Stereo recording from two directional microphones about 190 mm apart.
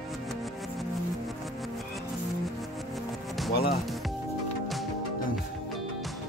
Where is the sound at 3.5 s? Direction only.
55° left (ahead or behind).